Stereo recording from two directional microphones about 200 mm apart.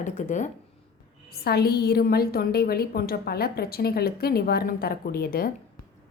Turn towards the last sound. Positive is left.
turn(degrees=50)  # may be behind; listen again after turning